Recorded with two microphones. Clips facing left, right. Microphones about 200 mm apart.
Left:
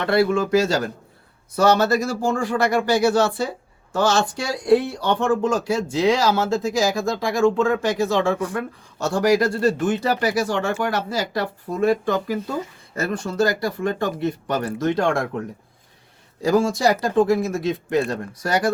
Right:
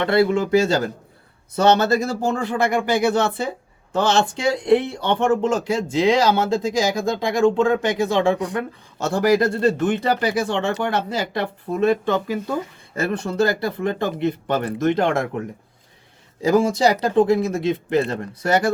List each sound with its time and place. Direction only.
0.0 s speech: 25° right (ahead or behind)
16.6 s speech: 20° right (ahead or behind)